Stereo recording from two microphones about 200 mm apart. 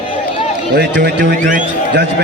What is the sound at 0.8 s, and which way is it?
Run, 55° right (ahead or behind).